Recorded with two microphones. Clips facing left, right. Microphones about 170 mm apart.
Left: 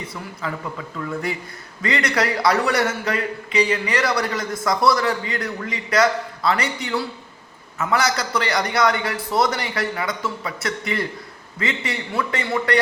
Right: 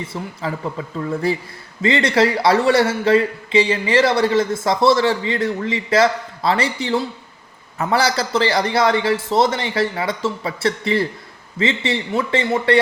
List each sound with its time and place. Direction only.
0.1 s a man's voice: 30° right (ahead or behind)